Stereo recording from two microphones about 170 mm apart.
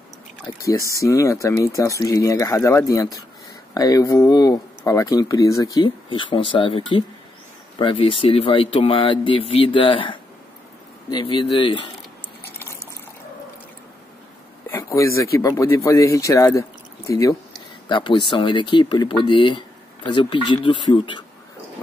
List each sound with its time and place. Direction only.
0.6 s speech: 20° left (ahead or behind)
12.5 s liquid: 15° left (ahead or behind)
14.7 s a sound: 15° left (ahead or behind)
15.3 s speech: 20° left (ahead or behind)